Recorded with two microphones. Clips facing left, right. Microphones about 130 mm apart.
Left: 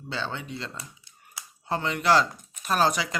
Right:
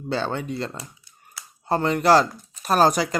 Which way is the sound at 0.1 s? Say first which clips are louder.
Right 7 dB; 45° right (ahead or behind).